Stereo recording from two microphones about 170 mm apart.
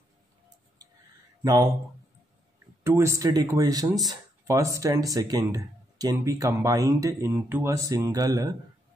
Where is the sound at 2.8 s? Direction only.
15° right (ahead or behind).